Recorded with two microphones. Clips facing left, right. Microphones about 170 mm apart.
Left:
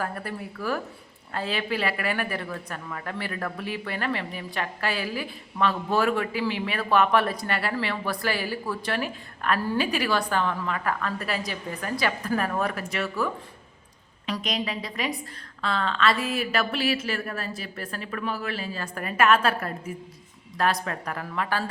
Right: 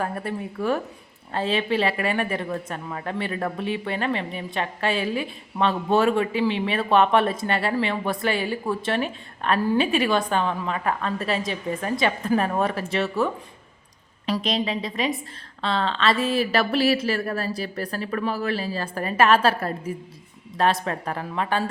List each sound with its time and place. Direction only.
0.0 s a woman's voice: 25° right (ahead or behind)